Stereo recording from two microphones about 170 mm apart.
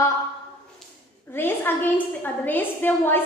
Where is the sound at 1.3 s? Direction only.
15° left (ahead or behind).